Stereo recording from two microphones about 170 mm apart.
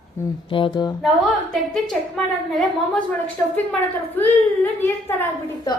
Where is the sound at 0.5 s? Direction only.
30° left (ahead or behind).